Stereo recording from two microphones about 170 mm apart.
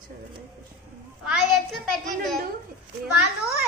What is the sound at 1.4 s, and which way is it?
Speech, centre (ahead or behind).